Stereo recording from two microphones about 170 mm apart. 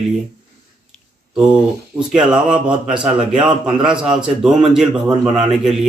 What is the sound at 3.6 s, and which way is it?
A man's voice, 5° right (ahead or behind).